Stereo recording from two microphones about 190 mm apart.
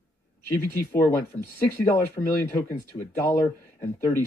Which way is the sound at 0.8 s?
10° left (ahead or behind).